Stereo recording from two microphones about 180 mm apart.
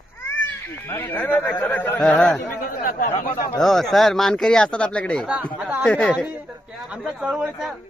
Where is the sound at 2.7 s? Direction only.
50° left (ahead or behind).